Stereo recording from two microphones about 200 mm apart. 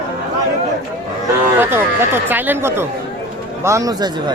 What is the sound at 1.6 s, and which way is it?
Speech, 10° right (ahead or behind).